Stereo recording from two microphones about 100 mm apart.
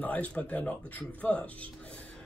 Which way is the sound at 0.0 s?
15° left (ahead or behind).